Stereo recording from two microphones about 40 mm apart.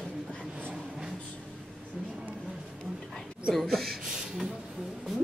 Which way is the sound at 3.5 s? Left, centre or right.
Centre.